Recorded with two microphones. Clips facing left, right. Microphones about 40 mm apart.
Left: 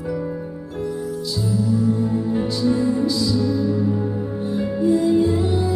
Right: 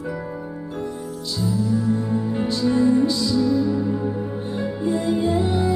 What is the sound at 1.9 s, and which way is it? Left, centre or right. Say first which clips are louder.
Music: left 2 dB; centre.